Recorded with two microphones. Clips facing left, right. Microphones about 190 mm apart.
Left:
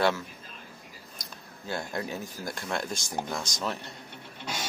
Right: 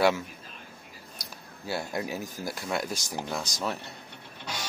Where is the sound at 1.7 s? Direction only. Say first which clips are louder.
Right 1 dB; 10° right (ahead or behind).